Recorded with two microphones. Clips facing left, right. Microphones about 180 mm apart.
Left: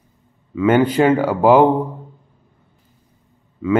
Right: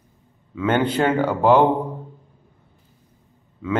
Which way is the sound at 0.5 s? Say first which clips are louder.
Left 6 dB; 10° left (ahead or behind).